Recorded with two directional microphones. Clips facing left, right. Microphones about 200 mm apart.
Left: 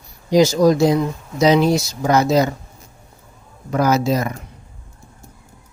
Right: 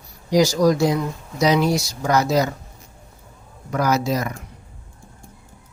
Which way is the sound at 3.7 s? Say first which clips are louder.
Left 4 dB; 25° left (ahead or behind).